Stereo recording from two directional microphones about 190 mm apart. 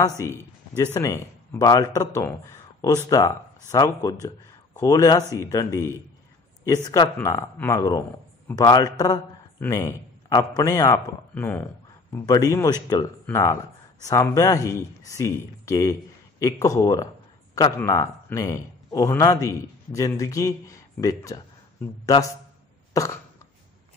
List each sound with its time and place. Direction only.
0.2 s a man's voice: 15° left (ahead or behind)
23.0 s cough: 15° left (ahead or behind)